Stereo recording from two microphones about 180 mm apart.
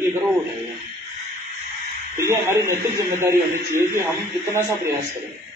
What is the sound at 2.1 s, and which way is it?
A man's voice, 15° right (ahead or behind).